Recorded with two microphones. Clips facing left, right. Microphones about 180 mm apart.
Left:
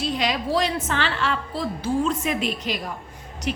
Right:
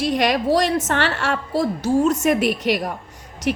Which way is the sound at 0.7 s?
45° right (ahead or behind).